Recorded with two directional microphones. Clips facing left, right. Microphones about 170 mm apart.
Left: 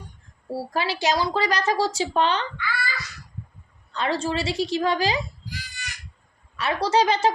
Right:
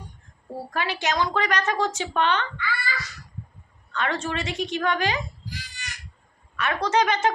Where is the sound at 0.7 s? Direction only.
35° left (ahead or behind).